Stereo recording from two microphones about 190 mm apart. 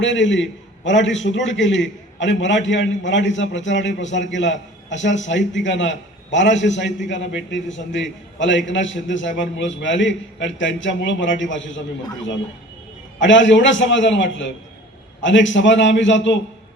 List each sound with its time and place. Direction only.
0.0 s a man's voice: 75° left (ahead or behind)
13.1 s a man's voice: 75° left (ahead or behind)